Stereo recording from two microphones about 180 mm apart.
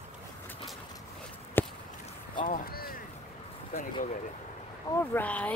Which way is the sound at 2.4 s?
55° left (ahead or behind).